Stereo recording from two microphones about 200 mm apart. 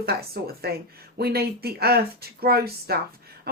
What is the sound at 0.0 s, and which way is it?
Speech, 50° right (ahead or behind).